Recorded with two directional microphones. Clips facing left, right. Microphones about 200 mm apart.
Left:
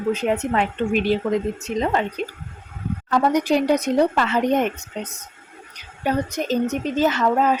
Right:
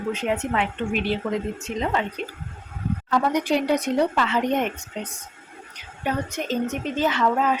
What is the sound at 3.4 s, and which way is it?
A woman's voice, 40° left (ahead or behind).